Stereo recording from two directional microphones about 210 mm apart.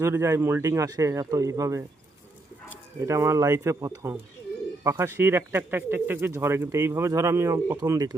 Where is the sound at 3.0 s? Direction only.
15° right (ahead or behind).